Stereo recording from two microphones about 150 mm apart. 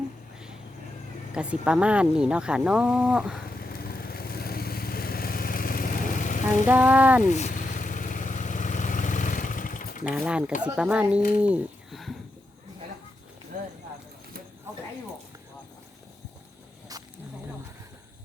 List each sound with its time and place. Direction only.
1.3 s speech: 5° right (ahead or behind)
3.6 s vehicle: 85° left; by 6.7 s 60° left (ahead or behind)
6.7 s speech: 10° right (ahead or behind)
7.3 s vehicle: 50° left (ahead or behind)
10.0 s speech: 5° right (ahead or behind)
11.4 s bird: 5° right (ahead or behind)
13.5 s clip-clop: 70° right (ahead or behind)
16.9 s snake: 25° right (ahead or behind)